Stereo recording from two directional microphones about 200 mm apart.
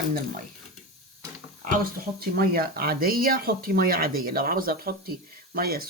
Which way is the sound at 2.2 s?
50° right (ahead or behind).